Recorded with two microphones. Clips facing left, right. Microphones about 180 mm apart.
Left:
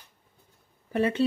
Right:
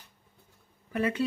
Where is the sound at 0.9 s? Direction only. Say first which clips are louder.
Left 4 dB; 30° left (ahead or behind).